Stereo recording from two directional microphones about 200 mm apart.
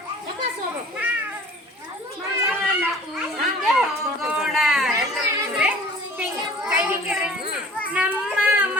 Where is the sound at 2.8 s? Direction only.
5° right (ahead or behind).